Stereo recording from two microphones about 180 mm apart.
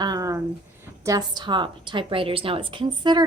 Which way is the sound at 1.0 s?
20° right (ahead or behind).